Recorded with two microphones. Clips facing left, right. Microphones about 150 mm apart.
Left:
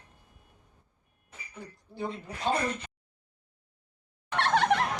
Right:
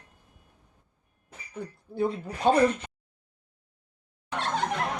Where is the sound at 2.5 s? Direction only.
50° right (ahead or behind).